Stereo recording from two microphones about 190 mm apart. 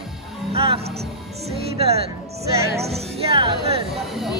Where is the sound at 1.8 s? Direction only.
30° right (ahead or behind).